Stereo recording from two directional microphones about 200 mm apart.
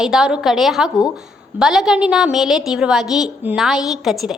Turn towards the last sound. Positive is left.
turn(degrees=0)  # may be behind; listen again after turning